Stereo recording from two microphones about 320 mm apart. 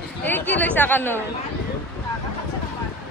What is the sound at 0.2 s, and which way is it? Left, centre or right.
Speech, centre.